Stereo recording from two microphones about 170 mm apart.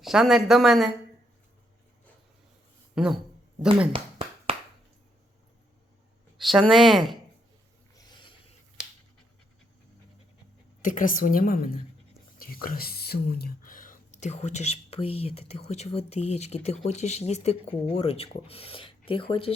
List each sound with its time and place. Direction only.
0.0 s speech: centre (ahead or behind)
2.9 s speech: 5° right (ahead or behind)
3.9 s a sound: 35° right (ahead or behind)
6.3 s speech: centre (ahead or behind)
7.9 s rub: 25° left (ahead or behind)
10.8 s a woman's voice: 50° left (ahead or behind); by 19.5 s 35° left (ahead or behind)